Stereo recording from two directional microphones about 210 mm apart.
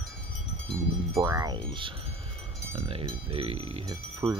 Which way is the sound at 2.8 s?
25° right (ahead or behind).